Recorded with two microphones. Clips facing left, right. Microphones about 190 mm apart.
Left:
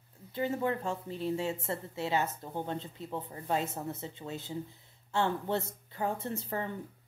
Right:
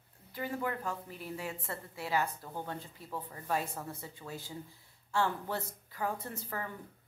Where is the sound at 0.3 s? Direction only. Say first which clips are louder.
Left 5 dB; 25° left (ahead or behind).